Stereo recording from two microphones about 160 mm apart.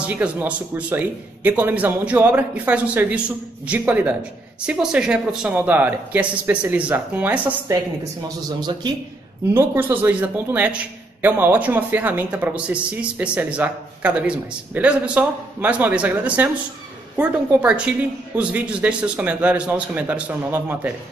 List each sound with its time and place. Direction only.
0.0 s a man's voice: 10° right (ahead or behind)
8.0 s speech: 25° right (ahead or behind)
9.5 s a man's voice: 15° right (ahead or behind)